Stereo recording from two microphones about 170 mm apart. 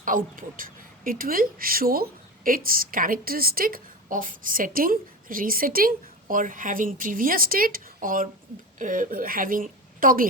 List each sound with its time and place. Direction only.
0.0 s speech: 55° right (ahead or behind)